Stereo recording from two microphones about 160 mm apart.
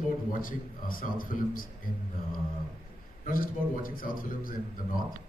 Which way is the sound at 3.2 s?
60° left (ahead or behind).